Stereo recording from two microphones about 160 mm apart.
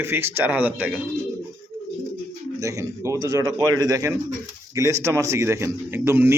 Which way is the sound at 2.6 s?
20° right (ahead or behind).